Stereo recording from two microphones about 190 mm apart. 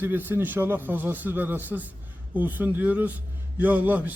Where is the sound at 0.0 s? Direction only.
10° right (ahead or behind).